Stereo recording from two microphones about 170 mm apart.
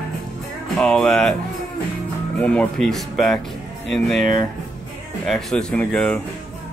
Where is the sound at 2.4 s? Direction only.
5° left (ahead or behind).